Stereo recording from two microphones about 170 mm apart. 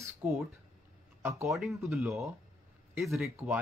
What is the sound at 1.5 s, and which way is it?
Speech, centre (ahead or behind).